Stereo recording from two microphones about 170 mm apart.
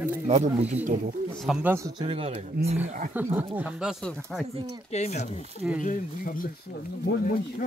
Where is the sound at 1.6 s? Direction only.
15° right (ahead or behind).